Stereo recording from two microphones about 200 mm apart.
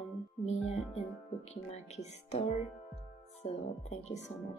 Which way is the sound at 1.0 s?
35° left (ahead or behind).